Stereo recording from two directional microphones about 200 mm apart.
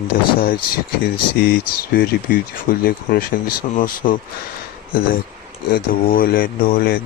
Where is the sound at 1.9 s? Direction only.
45° left (ahead or behind).